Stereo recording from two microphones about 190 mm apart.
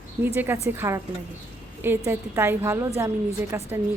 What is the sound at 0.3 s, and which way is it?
A woman's voice, 10° right (ahead or behind).